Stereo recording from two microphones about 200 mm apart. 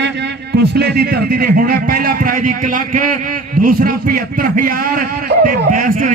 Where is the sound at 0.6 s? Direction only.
55° right (ahead or behind).